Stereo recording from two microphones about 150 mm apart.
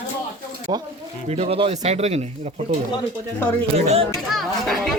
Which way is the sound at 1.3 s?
45° right (ahead or behind).